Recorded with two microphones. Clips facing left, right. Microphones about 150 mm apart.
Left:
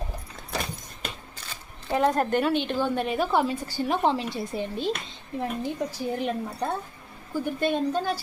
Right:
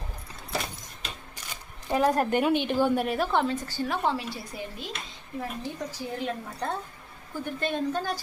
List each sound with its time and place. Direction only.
1.4 s speech: 15° right (ahead or behind); by 4.9 s 25° left (ahead or behind)
5.4 s speech: 15° left (ahead or behind)